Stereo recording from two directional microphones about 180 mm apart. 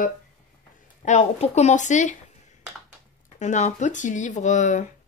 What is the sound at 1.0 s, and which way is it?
Speech, 40° left (ahead or behind).